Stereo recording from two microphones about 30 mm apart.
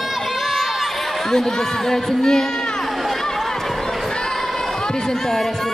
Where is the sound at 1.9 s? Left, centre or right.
Centre.